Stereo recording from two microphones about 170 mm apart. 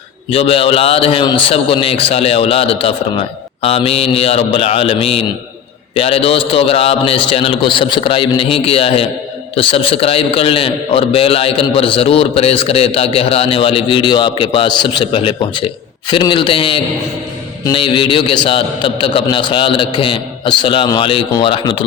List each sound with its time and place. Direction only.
0.3 s a man's voice: 35° left (ahead or behind)